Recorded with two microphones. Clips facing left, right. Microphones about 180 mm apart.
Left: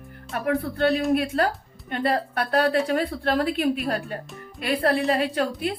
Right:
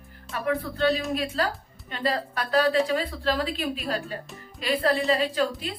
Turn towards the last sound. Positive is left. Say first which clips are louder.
# left 2 dB
turn(degrees=60)  # may be behind; listen again after turning